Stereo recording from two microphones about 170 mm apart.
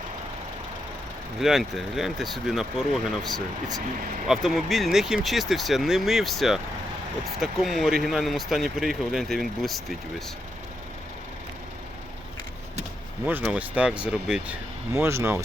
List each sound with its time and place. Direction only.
1.4 s speech: centre (ahead or behind)
13.2 s speech: 10° right (ahead or behind)
14.9 s speech: 15° right (ahead or behind)